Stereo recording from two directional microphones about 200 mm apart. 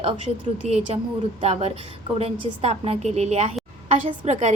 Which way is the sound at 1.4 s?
30° right (ahead or behind).